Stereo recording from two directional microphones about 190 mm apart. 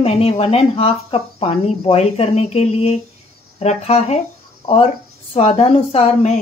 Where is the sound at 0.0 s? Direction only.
30° left (ahead or behind).